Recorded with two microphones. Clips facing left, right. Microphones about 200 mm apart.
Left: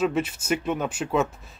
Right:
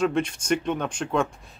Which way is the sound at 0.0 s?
5° left (ahead or behind).